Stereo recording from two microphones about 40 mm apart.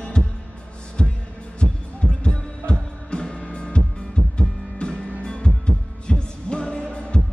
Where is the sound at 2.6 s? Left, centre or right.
Left.